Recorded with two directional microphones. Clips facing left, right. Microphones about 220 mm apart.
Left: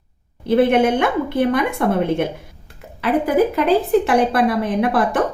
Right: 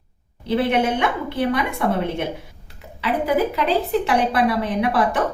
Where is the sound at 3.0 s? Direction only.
50° left (ahead or behind).